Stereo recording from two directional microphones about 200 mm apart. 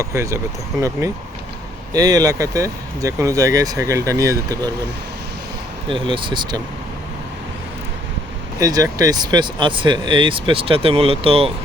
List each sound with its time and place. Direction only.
0.0 s speech: 15° right (ahead or behind)
5.9 s speech: 25° right (ahead or behind)
8.5 s speech: 15° right (ahead or behind)